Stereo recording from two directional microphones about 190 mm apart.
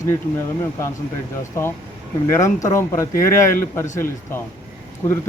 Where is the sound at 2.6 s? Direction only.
15° left (ahead or behind).